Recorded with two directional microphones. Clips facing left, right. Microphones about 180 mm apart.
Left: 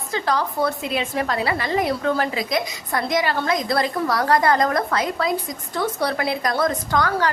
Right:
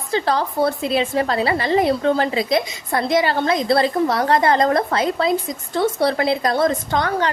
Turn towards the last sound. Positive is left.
turn(degrees=-25)  # may be behind; listen again after turning